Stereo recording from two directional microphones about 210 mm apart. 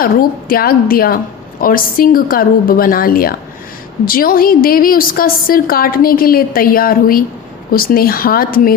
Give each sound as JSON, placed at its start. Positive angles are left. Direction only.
{"t": 0.0, "sound": "a woman's voice", "side_deg": 45}